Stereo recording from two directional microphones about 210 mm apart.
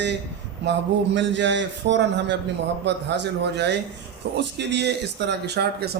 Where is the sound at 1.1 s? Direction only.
55° right (ahead or behind).